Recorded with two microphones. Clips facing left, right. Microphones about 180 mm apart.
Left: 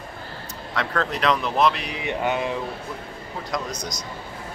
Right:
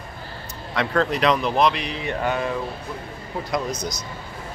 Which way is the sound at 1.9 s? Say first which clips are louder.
Even; 15° left (ahead or behind).